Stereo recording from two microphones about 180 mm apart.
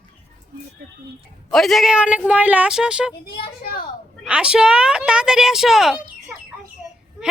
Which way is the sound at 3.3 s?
60° left (ahead or behind).